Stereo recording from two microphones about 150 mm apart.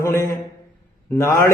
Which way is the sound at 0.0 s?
20° left (ahead or behind).